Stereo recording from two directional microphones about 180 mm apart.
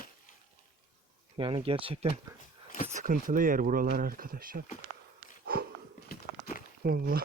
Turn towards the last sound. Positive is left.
turn(degrees=-55)  # may be behind; listen again after turning